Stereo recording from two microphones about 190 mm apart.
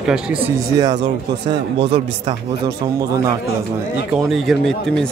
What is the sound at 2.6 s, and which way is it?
Speech, 20° right (ahead or behind).